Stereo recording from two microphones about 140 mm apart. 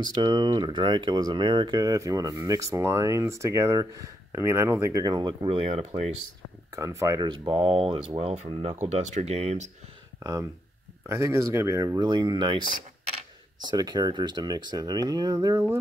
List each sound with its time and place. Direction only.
0.0 s speech: 30° right (ahead or behind); by 6.0 s 50° right (ahead or behind)
6.7 s speech: 20° right (ahead or behind)
7.2 s speech: 35° right (ahead or behind)
8.7 s speech: 55° right (ahead or behind)
11.1 s speech: 20° right (ahead or behind)
13.7 s speech: 30° right (ahead or behind)